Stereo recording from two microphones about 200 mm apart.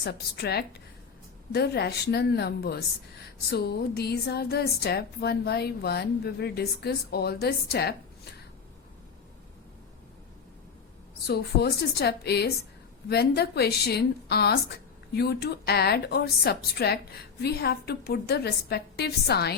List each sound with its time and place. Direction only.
0.0 s a woman's voice: 55° left (ahead or behind)
11.3 s a woman's voice: 50° left (ahead or behind)